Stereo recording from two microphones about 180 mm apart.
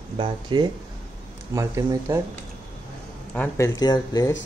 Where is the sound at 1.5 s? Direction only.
15° right (ahead or behind).